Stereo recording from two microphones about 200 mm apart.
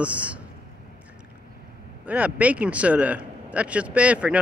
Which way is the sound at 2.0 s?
5° right (ahead or behind).